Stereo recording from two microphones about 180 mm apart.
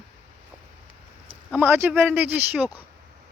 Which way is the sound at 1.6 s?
10° right (ahead or behind).